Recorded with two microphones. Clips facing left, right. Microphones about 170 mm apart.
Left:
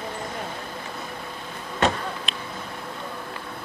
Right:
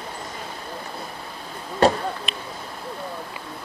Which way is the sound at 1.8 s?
35° right (ahead or behind).